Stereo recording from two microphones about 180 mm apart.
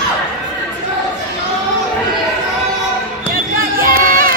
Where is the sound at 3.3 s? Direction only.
55° right (ahead or behind).